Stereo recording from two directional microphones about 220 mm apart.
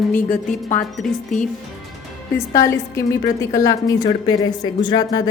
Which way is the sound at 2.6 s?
15° left (ahead or behind).